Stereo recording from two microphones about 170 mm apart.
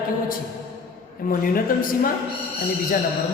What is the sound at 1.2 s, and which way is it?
Speech, 55° left (ahead or behind).